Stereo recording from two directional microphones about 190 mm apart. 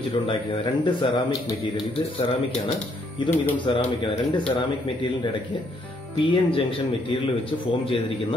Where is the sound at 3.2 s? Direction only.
25° left (ahead or behind).